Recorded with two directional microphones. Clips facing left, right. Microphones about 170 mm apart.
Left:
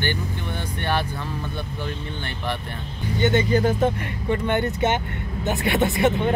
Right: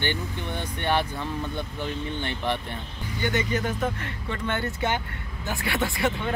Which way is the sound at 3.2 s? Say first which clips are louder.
Left 7 dB; 30° left (ahead or behind).